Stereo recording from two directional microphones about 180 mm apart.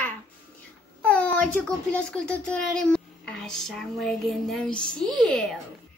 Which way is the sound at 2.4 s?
5° left (ahead or behind).